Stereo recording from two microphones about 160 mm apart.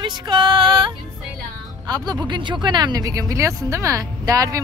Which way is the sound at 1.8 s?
25° right (ahead or behind).